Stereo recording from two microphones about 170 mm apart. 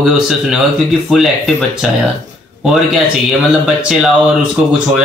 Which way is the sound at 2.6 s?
Centre (ahead or behind).